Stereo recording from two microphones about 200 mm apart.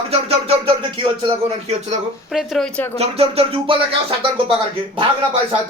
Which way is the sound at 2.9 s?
30° right (ahead or behind).